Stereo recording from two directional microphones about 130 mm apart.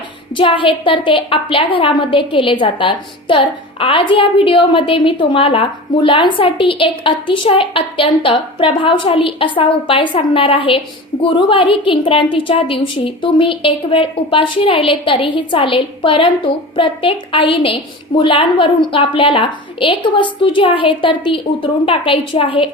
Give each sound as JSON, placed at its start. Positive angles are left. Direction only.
{"t": 0.3, "sound": "a woman's voice", "side_deg": 40}